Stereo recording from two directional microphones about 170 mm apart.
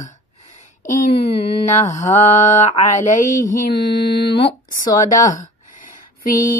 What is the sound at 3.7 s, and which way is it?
Mantra, 75° left (ahead or behind).